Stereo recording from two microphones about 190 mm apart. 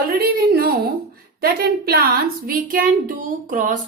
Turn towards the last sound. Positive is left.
turn(degrees=-45)  # may be behind; listen again after turning